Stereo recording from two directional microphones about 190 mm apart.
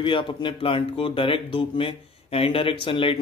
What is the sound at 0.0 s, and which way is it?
Speech, 25° left (ahead or behind).